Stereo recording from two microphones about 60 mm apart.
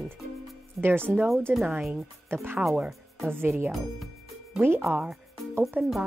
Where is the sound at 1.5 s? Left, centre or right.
Right.